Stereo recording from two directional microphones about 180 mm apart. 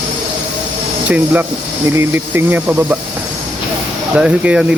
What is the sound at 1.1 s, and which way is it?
Speech, 10° right (ahead or behind).